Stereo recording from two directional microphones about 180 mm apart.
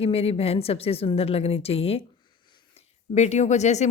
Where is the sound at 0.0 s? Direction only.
35° left (ahead or behind).